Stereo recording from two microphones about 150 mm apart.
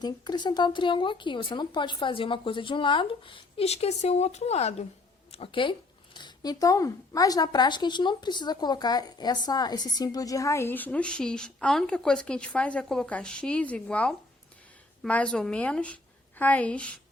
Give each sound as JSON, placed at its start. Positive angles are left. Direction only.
{"t": 0.0, "sound": "a woman's voice", "side_deg": 30}